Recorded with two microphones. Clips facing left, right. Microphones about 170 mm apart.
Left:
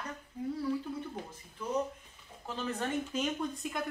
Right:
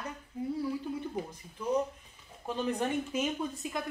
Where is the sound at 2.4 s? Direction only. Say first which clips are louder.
Right 4 dB; 15° right (ahead or behind).